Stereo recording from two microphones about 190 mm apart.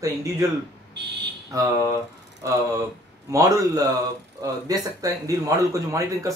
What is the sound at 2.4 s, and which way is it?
Speech, 15° right (ahead or behind).